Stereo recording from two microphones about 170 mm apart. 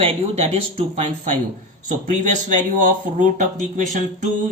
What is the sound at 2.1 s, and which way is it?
Speech, 45° right (ahead or behind).